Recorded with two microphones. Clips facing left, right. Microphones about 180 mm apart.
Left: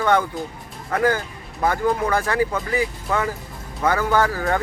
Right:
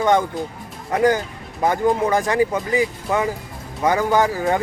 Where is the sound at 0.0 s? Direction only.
15° right (ahead or behind).